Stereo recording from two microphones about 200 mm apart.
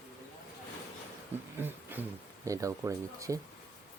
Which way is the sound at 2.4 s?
15° right (ahead or behind).